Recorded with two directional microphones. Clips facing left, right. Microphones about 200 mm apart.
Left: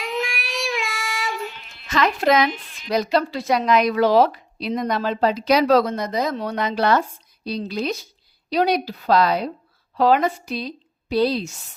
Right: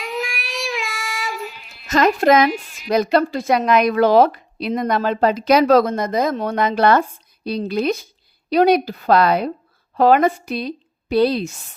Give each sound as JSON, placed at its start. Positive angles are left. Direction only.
{"t": 0.0, "sound": "child singing", "side_deg": 0}
{"t": 1.9, "sound": "speech", "side_deg": -45}
{"t": 2.5, "sound": "a woman's voice", "side_deg": -10}
{"t": 2.9, "sound": "a woman's voice", "side_deg": -55}